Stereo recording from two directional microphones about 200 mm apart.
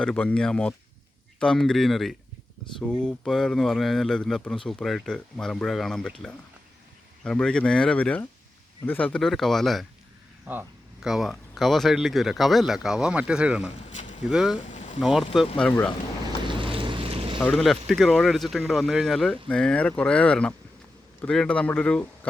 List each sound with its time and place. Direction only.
0.0 s speech: 5° left (ahead or behind)
10.4 s speech: 10° right (ahead or behind)
13.9 s a sound: 40° left (ahead or behind)
14.3 s speech: 5° right (ahead or behind)
14.7 s boat: 35° left (ahead or behind)
15.5 s speech: 5° left (ahead or behind)
16.4 s boat: 25° right (ahead or behind)
17.4 s speech: centre (ahead or behind)